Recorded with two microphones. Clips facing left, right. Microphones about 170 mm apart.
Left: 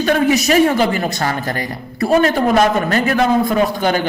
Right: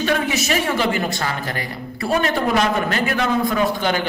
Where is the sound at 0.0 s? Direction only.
40° left (ahead or behind).